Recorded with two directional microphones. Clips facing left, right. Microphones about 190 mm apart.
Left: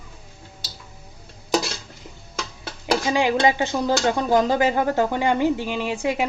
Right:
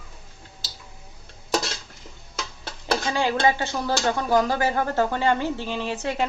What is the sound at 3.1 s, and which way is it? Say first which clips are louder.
Speech: left 3 dB; 15° left (ahead or behind).